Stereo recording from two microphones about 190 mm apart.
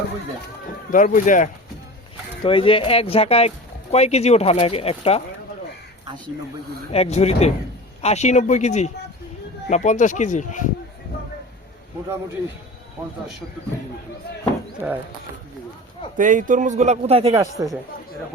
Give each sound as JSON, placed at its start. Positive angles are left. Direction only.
{"t": 0.9, "sound": "speech", "side_deg": 45}
{"t": 2.4, "sound": "speech", "side_deg": 25}
{"t": 6.9, "sound": "speech", "side_deg": 35}
{"t": 14.8, "sound": "speech", "side_deg": -10}
{"t": 16.1, "sound": "a man's voice", "side_deg": -45}
{"t": 17.3, "sound": "speech", "side_deg": -15}